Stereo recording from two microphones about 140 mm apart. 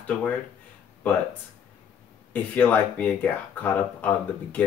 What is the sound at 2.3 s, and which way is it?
Speech, 10° left (ahead or behind).